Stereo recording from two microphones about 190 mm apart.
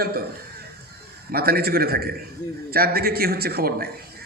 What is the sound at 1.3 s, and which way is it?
A man's voice, 55° right (ahead or behind).